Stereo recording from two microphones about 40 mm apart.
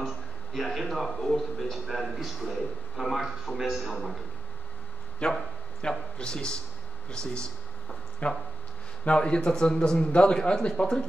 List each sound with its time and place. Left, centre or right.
0.0 s a man's voice: centre
5.2 s a man's voice: left
8.2 s a man's voice: left